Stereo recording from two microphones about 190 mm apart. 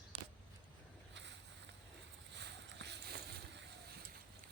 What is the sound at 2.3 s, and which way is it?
Boat, 65° right (ahead or behind).